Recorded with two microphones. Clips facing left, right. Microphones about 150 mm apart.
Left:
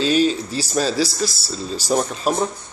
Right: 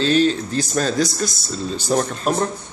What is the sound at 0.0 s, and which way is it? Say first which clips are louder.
A man's voice: right 1 dB; 10° left (ahead or behind).